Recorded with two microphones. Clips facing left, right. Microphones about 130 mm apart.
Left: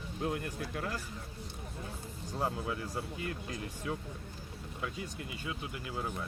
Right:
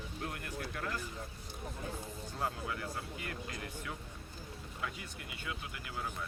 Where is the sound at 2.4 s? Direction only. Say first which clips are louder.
Left 4 dB; 20° left (ahead or behind).